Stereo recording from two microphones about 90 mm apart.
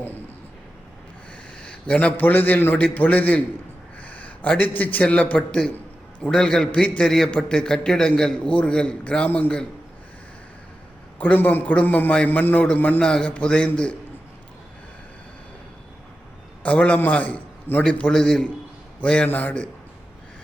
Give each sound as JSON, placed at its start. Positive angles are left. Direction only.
{"t": 1.5, "sound": "a man's voice", "side_deg": 10}
{"t": 11.2, "sound": "a man's voice", "side_deg": 20}
{"t": 16.6, "sound": "a man's voice", "side_deg": 15}